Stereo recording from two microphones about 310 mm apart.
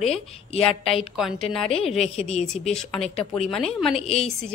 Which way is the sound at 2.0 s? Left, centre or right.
Left.